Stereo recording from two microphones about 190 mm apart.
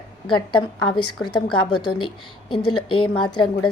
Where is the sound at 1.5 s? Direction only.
25° left (ahead or behind).